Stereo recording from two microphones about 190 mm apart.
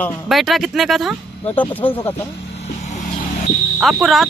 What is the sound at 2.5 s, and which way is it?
Vehicle, 35° left (ahead or behind).